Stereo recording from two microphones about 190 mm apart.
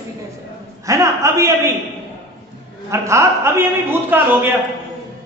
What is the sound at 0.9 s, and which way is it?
Speech, 15° right (ahead or behind).